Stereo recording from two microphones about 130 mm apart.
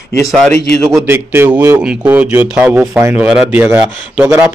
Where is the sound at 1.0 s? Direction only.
20° right (ahead or behind).